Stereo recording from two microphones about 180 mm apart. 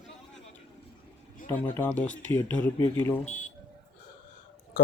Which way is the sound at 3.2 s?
40° left (ahead or behind).